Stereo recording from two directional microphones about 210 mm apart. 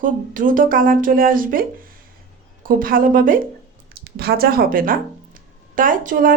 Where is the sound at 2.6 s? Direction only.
40° right (ahead or behind).